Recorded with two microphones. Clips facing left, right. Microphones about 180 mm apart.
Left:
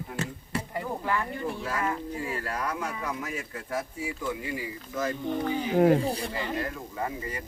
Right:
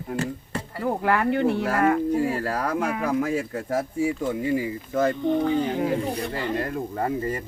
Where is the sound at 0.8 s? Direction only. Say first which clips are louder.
Right 8 dB; 75° right (ahead or behind).